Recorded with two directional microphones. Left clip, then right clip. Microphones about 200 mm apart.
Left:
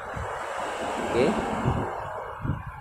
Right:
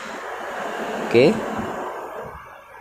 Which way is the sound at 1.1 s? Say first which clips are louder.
Right 9 dB; 35° right (ahead or behind).